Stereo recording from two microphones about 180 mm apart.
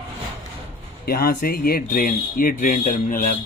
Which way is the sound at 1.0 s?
55° left (ahead or behind).